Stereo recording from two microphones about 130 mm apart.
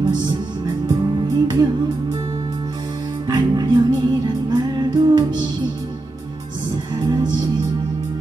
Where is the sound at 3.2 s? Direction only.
30° right (ahead or behind).